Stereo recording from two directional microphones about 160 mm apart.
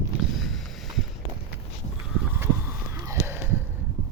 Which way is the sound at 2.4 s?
15° right (ahead or behind).